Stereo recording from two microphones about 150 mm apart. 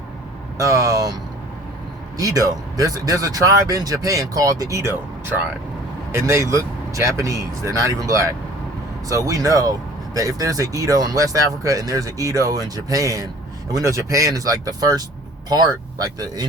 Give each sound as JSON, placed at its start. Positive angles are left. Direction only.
{"t": 0.6, "sound": "speech", "side_deg": -25}
{"t": 2.1, "sound": "speech", "side_deg": -25}